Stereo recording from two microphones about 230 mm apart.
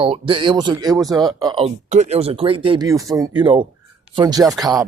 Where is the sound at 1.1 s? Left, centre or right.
Centre.